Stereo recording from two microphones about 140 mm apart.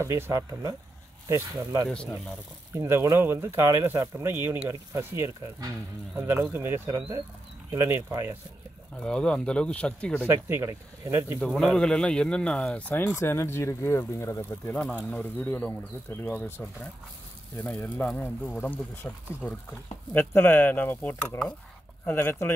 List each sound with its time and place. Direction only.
0.0 s speech: 20° right (ahead or behind)
8.9 s speech: 5° left (ahead or behind)
10.2 s speech: 15° right (ahead or behind)
11.3 s speech: 5° left (ahead or behind)